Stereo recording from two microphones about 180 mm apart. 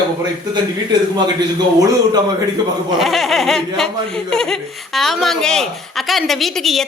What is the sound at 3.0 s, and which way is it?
Speech, centre (ahead or behind).